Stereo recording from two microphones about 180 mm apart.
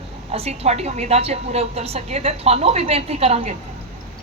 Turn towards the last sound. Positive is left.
turn(degrees=-35)  # may be behind; listen again after turning